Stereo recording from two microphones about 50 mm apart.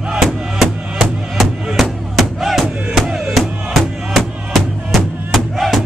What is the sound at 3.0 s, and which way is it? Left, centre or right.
Music, centre.